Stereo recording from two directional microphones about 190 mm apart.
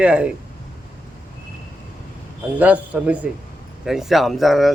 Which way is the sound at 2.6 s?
5° right (ahead or behind).